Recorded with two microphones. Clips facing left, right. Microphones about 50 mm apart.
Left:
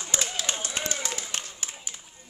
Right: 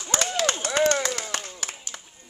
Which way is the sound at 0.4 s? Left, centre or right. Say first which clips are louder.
Right 9 dB; right.